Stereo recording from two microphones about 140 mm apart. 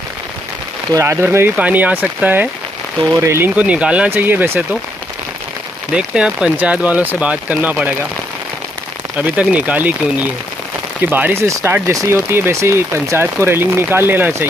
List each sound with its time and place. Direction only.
0.9 s speech: 20° right (ahead or behind)
5.9 s speech: 5° right (ahead or behind)
9.2 s speech: 10° right (ahead or behind)